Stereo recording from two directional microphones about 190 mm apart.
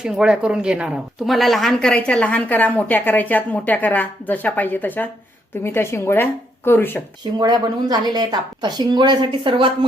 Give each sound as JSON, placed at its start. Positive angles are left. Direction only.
{"t": 0.0, "sound": "speech", "side_deg": -5}
{"t": 7.3, "sound": "speech", "side_deg": -20}